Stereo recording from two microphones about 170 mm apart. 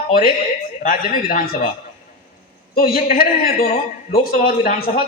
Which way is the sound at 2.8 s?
60° left (ahead or behind).